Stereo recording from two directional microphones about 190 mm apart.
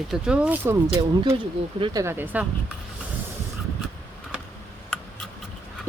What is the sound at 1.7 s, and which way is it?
Speech, 25° right (ahead or behind).